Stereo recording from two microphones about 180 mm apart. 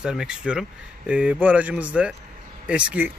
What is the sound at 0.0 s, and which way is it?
Speech, 5° right (ahead or behind).